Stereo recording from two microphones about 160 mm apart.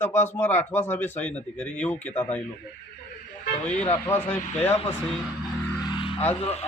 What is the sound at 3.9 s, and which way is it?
Speech, 15° left (ahead or behind).